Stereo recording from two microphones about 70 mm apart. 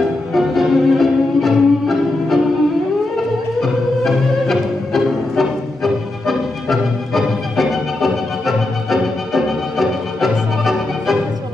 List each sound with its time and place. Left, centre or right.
0.3 s music: centre
3.6 s music: centre